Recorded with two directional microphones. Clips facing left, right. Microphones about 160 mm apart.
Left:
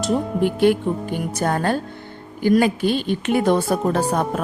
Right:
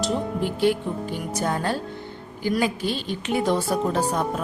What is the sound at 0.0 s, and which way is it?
Speech, 55° left (ahead or behind).